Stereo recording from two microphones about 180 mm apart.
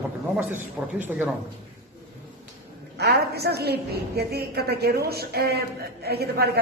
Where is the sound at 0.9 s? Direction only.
10° right (ahead or behind).